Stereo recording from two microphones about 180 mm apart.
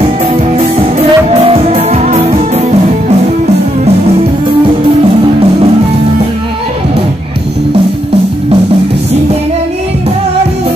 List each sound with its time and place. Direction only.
0.6 s music: 30° right (ahead or behind)